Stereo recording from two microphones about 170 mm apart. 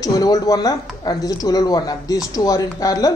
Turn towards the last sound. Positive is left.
turn(degrees=20)  # may be behind; listen again after turning